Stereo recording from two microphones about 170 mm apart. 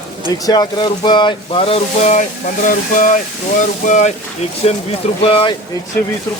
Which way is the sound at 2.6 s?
50° left (ahead or behind).